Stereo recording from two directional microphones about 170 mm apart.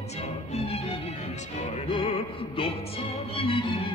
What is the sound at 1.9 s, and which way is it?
Music, 35° left (ahead or behind).